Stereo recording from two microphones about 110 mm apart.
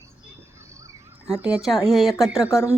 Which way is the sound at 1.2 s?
10° right (ahead or behind).